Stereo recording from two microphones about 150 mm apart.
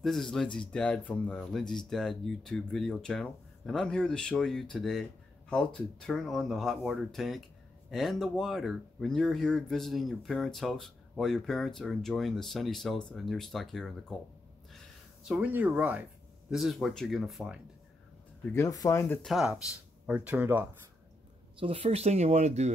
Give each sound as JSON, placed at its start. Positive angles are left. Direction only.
{"t": 0.0, "sound": "speech", "side_deg": 0}
{"t": 15.2, "sound": "speech", "side_deg": -5}
{"t": 18.5, "sound": "speech", "side_deg": 20}
{"t": 19.2, "sound": "speech", "side_deg": -5}
{"t": 21.5, "sound": "speech", "side_deg": -40}